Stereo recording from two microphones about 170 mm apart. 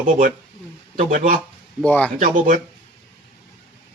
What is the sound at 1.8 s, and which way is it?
Speech, 10° left (ahead or behind).